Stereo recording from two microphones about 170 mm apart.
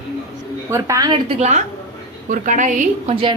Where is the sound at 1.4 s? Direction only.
45° right (ahead or behind).